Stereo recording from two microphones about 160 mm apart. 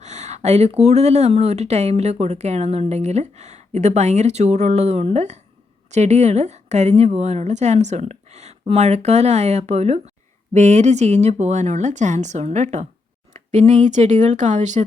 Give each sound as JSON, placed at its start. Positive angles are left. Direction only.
{"t": 0.0, "sound": "speech", "side_deg": -45}